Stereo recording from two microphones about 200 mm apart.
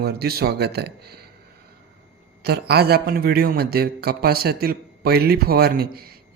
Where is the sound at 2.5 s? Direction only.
50° right (ahead or behind).